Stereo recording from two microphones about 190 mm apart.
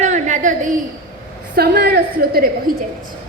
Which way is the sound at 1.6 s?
55° right (ahead or behind).